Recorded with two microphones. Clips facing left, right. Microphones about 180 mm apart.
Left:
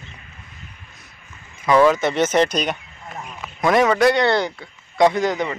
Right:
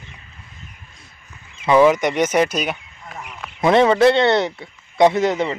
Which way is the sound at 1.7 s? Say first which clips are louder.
Right 1 dB; 15° right (ahead or behind).